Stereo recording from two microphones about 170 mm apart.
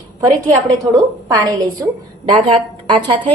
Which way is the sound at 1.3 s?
25° right (ahead or behind).